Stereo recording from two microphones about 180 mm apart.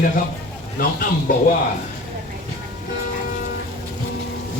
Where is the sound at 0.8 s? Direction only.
50° left (ahead or behind).